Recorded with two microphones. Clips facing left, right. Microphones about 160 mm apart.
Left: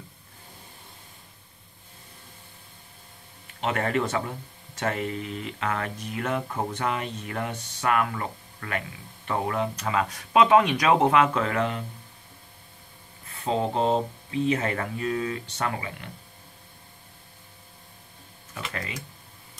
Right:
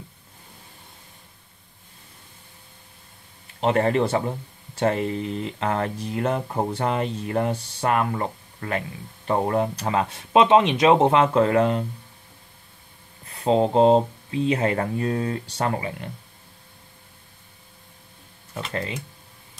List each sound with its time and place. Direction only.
3.6 s speech: 30° right (ahead or behind)
13.3 s speech: 35° right (ahead or behind)
18.5 s speech: 30° right (ahead or behind)